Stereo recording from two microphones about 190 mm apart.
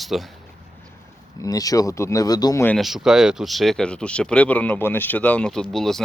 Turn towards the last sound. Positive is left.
turn(degrees=0)  # may be behind; listen again after turning